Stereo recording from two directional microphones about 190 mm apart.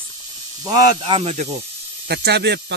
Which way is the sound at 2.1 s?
60° right (ahead or behind).